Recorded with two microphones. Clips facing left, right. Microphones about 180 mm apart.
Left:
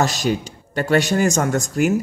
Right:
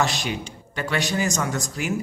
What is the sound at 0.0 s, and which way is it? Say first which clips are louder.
A man's voice: left 5 dB; 40° left (ahead or behind).